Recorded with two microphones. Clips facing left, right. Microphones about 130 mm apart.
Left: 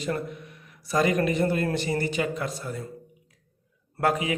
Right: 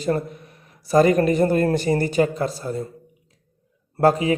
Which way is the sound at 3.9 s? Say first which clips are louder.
Right 7 dB; 35° right (ahead or behind).